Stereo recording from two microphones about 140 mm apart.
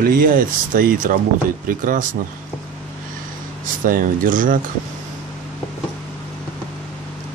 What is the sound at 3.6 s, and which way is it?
Speech, 80° right.